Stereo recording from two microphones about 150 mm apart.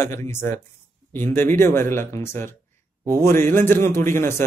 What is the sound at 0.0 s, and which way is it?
Speech, 15° left (ahead or behind).